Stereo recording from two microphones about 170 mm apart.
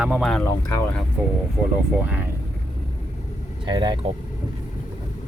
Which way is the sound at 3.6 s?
25° right (ahead or behind).